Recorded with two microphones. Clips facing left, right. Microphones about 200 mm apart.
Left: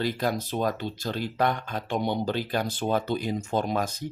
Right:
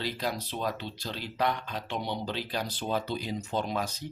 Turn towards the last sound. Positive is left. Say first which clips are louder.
# left 4 dB
turn(degrees=50)  # may be behind; listen again after turning